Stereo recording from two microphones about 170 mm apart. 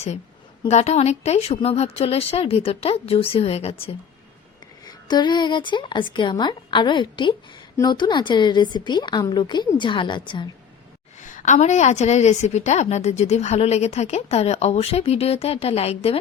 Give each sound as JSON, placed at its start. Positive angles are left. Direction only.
{"t": 0.7, "sound": "a woman's voice", "side_deg": 40}
{"t": 4.9, "sound": "a woman's voice", "side_deg": 25}
{"t": 11.2, "sound": "a woman's voice", "side_deg": 50}